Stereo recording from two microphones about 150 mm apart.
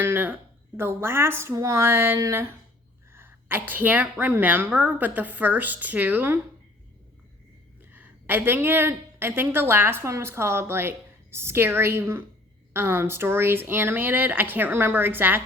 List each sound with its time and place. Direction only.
0.0 s a woman's voice: 15° right (ahead or behind)
7.9 s a woman's voice: 10° right (ahead or behind)